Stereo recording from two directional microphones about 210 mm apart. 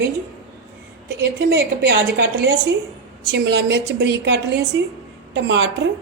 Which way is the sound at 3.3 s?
55° right (ahead or behind).